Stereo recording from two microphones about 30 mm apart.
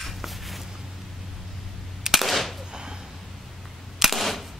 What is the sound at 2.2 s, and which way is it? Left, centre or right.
Gunshot, centre.